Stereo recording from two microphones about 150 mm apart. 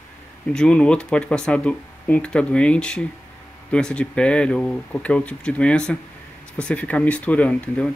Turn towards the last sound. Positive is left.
turn(degrees=10)  # may be behind; listen again after turning